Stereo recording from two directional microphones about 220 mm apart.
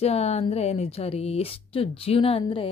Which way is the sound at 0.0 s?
30° left (ahead or behind).